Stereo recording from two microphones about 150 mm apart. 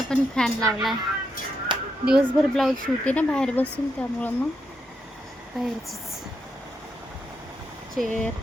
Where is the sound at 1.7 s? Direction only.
30° right (ahead or behind).